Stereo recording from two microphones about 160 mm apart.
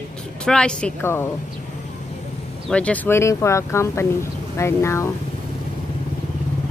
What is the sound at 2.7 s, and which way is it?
Speech, 10° left (ahead or behind).